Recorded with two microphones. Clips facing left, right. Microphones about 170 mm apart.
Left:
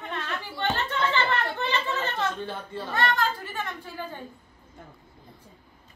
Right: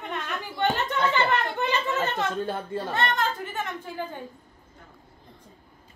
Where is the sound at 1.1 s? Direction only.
20° right (ahead or behind).